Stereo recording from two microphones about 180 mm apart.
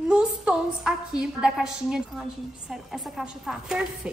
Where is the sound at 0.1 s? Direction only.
5° right (ahead or behind).